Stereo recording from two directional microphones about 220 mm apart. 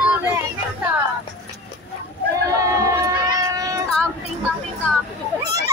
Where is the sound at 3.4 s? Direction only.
15° right (ahead or behind).